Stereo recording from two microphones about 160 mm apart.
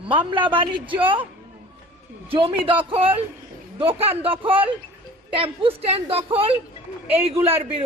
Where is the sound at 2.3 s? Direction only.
35° right (ahead or behind).